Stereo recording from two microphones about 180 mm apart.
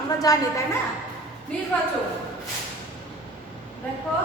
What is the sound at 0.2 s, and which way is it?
Speech, 20° left (ahead or behind).